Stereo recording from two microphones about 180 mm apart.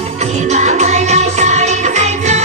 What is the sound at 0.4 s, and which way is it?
Music, 40° right (ahead or behind).